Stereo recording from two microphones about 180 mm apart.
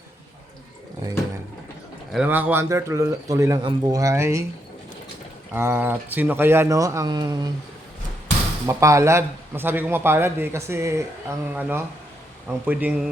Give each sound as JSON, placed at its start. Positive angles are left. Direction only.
{"t": 2.1, "sound": "a man's voice", "side_deg": -10}
{"t": 5.5, "sound": "a man's voice", "side_deg": -15}
{"t": 8.6, "sound": "a man's voice", "side_deg": -15}